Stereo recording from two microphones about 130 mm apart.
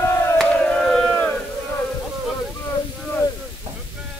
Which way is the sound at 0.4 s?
5° left (ahead or behind).